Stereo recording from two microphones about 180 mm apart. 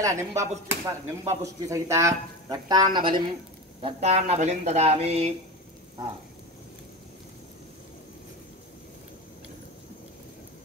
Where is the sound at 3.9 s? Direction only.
35° right (ahead or behind).